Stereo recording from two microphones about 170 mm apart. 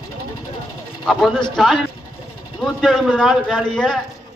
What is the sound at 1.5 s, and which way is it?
A man's voice, 5° left (ahead or behind).